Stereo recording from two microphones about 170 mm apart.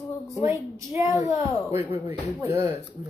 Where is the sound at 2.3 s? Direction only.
15° right (ahead or behind).